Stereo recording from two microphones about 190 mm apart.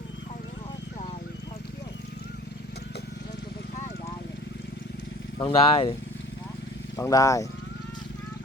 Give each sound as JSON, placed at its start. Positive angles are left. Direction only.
{"t": 5.4, "sound": "speech", "side_deg": 30}
{"t": 6.9, "sound": "speech", "side_deg": 15}